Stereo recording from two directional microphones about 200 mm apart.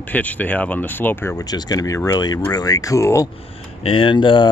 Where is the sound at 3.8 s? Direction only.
25° left (ahead or behind).